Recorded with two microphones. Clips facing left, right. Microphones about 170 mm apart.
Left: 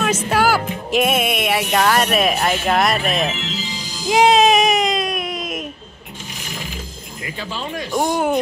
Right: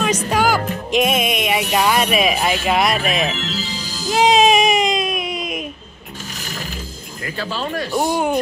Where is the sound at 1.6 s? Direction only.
5° right (ahead or behind).